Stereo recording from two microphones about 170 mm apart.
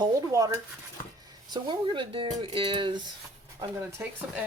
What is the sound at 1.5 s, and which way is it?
Speech, 25° right (ahead or behind).